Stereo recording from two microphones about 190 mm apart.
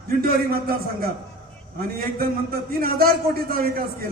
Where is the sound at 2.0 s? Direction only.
50° right (ahead or behind).